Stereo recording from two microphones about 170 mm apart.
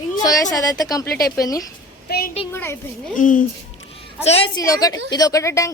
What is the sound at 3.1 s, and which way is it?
Speech, 50° left (ahead or behind).